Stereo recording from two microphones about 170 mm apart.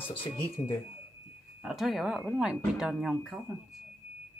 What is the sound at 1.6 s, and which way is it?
Speech, centre (ahead or behind).